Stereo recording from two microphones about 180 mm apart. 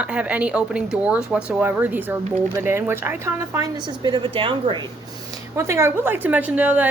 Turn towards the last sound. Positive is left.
turn(degrees=-10)  # may be behind; listen again after turning